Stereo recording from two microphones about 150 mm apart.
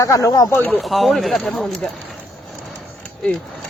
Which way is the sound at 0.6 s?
5° left (ahead or behind).